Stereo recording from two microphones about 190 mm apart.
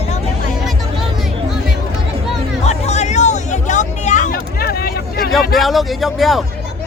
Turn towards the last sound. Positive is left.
turn(degrees=0)  # may be behind; listen again after turning